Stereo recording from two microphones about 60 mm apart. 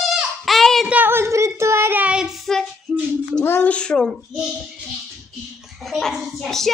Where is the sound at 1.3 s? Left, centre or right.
Right.